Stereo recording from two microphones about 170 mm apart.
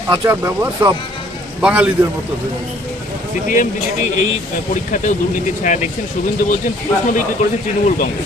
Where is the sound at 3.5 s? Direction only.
50° left (ahead or behind).